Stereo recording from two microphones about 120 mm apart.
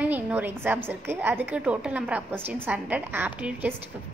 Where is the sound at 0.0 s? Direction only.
15° right (ahead or behind).